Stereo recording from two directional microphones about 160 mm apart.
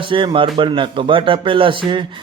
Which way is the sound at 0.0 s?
30° right (ahead or behind).